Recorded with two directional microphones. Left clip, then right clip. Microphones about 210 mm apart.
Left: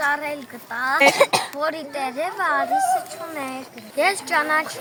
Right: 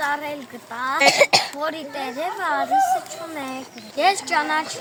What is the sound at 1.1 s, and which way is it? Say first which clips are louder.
Speech: right 1 dB; 45° right (ahead or behind).